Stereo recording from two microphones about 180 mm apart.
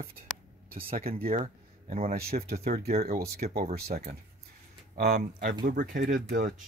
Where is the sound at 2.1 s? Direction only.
60° right (ahead or behind).